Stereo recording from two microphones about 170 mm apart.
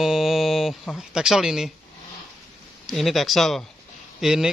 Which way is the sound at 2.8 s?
Centre (ahead or behind).